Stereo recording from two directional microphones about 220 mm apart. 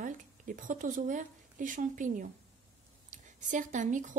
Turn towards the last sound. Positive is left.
turn(degrees=-35)  # may be behind; listen again after turning